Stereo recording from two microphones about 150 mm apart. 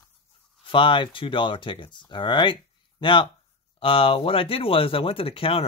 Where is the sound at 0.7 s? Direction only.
35° left (ahead or behind).